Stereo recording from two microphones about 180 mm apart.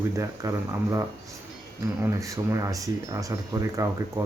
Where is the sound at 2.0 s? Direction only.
15° right (ahead or behind).